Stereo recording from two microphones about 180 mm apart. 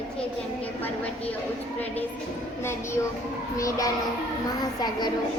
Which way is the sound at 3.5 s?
15° left (ahead or behind).